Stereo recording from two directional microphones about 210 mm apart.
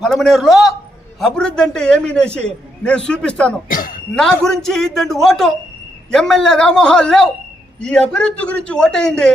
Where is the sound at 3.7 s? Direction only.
40° left (ahead or behind).